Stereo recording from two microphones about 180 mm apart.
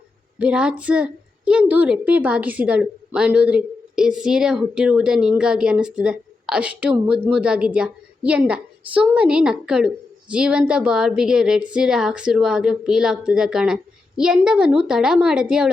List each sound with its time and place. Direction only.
0.3 s a woman's voice: 5° right (ahead or behind)